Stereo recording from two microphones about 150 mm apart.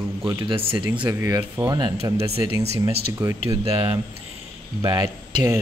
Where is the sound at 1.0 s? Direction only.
20° right (ahead or behind).